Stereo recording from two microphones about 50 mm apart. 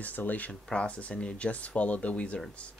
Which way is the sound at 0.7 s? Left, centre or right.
Left.